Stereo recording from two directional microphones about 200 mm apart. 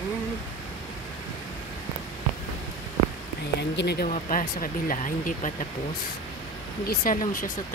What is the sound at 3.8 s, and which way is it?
Speech, 55° left (ahead or behind).